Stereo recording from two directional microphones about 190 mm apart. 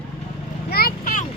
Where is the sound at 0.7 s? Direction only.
55° left (ahead or behind).